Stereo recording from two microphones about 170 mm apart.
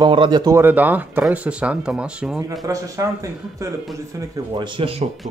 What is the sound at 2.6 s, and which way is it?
Speech, 20° right (ahead or behind).